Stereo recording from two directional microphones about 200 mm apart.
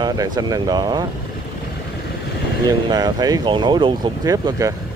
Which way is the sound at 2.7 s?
20° right (ahead or behind).